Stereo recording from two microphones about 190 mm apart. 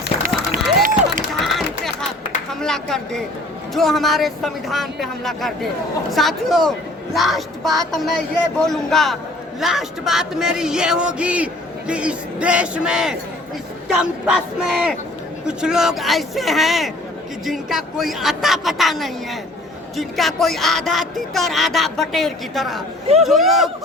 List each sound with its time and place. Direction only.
0.2 s music: 45° right (ahead or behind)
1.3 s run: centre (ahead or behind)
2.5 s a sound: centre (ahead or behind)
3.8 s speech: centre (ahead or behind)